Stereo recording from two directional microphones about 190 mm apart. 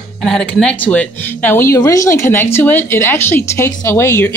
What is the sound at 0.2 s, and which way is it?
Speech, 5° left (ahead or behind).